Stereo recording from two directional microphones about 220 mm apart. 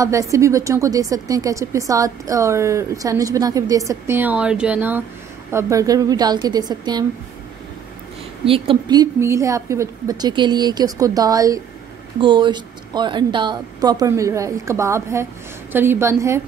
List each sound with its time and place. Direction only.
0.0 s a woman's voice: 15° right (ahead or behind)
8.5 s a woman's voice: 25° right (ahead or behind)